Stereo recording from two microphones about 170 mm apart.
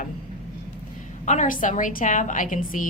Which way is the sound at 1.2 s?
45° left (ahead or behind).